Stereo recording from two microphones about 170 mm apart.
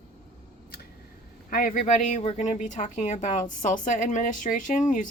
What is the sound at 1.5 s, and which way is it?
Speech, 55° left (ahead or behind).